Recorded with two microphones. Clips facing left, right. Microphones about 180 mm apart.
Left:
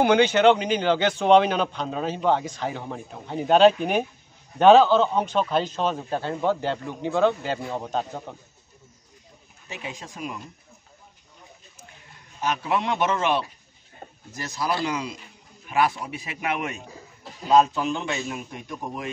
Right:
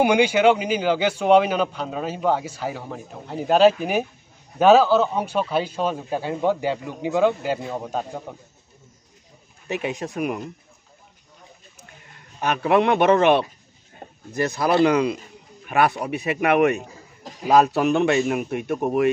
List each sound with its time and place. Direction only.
0.0 s a man's voice: 10° right (ahead or behind)
9.7 s a man's voice: 65° right (ahead or behind)
12.4 s a man's voice: 60° right (ahead or behind)